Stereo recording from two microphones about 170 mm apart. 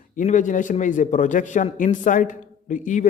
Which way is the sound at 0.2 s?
50° left (ahead or behind).